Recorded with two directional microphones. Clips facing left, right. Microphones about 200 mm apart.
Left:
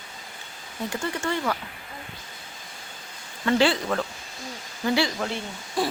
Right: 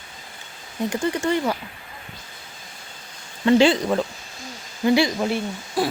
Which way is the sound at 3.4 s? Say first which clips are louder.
Right 6 dB; 20° right (ahead or behind).